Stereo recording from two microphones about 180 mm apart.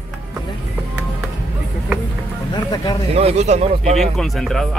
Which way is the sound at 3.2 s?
35° right (ahead or behind).